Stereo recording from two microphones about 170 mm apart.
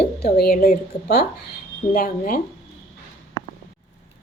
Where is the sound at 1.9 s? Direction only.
55° left (ahead or behind).